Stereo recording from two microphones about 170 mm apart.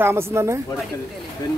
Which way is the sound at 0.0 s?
15° right (ahead or behind).